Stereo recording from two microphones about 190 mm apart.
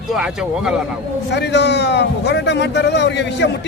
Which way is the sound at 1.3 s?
65° left (ahead or behind).